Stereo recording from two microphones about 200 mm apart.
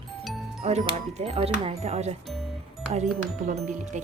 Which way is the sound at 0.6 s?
35° right (ahead or behind).